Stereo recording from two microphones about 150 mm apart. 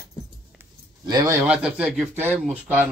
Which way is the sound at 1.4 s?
10° right (ahead or behind).